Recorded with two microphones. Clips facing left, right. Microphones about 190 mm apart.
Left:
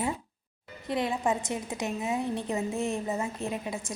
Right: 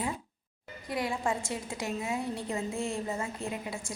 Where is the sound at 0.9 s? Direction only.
20° left (ahead or behind).